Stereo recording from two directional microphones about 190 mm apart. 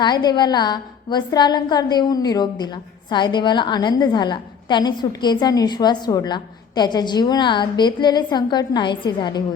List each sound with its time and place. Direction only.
0.0 s a woman's voice: 20° left (ahead or behind)